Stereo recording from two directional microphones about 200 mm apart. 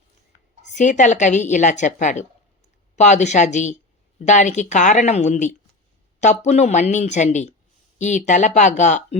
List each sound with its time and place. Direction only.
0.7 s a woman's voice: 35° left (ahead or behind)